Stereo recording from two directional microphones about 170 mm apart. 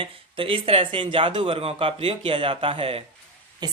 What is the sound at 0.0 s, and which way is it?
Speech, 30° right (ahead or behind).